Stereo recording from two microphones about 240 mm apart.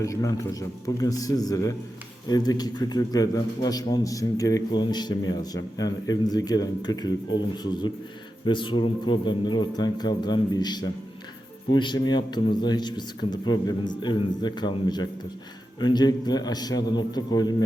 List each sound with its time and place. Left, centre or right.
0.0 s a man's voice: centre